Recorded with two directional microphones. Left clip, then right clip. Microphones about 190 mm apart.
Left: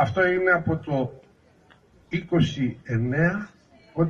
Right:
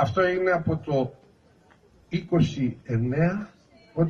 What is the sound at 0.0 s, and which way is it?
Speech, centre (ahead or behind).